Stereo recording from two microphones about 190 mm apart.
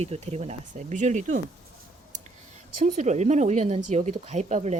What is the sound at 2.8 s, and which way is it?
Speech, 40° right (ahead or behind).